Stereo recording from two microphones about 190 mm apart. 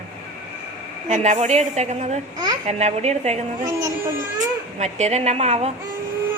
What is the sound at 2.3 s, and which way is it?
Speech, 20° right (ahead or behind).